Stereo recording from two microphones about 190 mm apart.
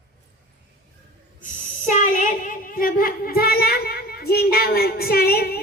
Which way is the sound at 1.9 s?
40° left (ahead or behind).